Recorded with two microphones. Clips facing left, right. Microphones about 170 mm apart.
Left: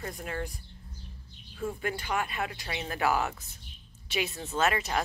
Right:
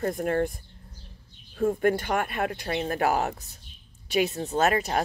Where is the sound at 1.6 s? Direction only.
50° right (ahead or behind).